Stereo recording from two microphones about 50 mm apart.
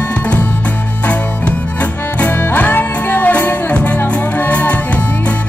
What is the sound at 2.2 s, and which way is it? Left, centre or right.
Music, left.